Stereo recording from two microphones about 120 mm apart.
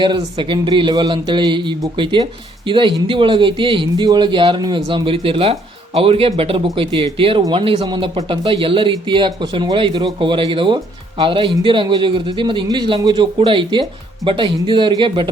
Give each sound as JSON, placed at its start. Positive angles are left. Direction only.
{"t": 0.0, "sound": "speech", "side_deg": -40}